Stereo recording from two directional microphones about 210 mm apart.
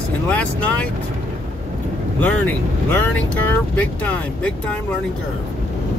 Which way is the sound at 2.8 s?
10° left (ahead or behind).